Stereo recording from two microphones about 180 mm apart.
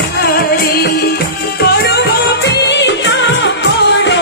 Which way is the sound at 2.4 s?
75° left (ahead or behind).